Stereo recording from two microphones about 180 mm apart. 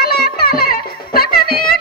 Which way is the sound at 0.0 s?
60° left (ahead or behind).